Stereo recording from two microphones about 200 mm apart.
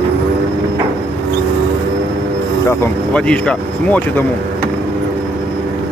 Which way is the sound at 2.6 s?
5° left (ahead or behind).